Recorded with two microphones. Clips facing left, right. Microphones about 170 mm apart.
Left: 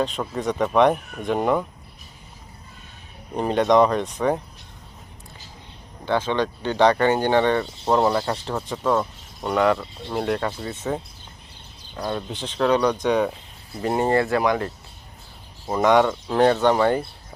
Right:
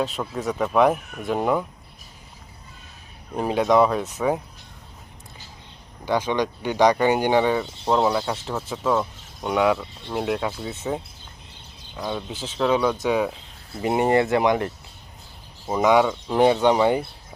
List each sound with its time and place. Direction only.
0.0 s speech: centre (ahead or behind)
3.3 s speech: 5° right (ahead or behind)
6.1 s speech: 15° right (ahead or behind)
15.6 s speech: 5° right (ahead or behind)